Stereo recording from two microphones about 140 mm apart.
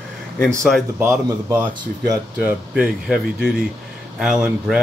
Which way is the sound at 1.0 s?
20° right (ahead or behind).